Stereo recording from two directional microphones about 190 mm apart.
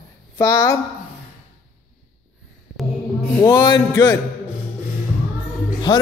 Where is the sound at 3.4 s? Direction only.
25° left (ahead or behind).